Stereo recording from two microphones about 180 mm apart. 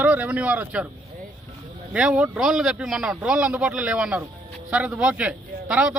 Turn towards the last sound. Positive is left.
turn(degrees=-5)  # may be behind; listen again after turning